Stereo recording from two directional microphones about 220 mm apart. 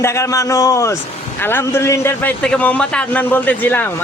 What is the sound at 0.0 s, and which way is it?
A man's voice, 15° left (ahead or behind).